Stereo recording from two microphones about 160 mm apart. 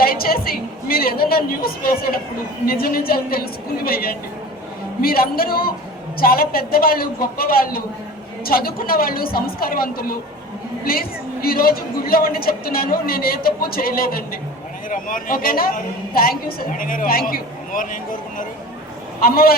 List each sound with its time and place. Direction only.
0.0 s a sound: 70° left (ahead or behind)
2.6 s a man's voice: 70° left (ahead or behind)
11.4 s a man's voice: 65° left (ahead or behind)
19.2 s a man's voice: 70° left (ahead or behind)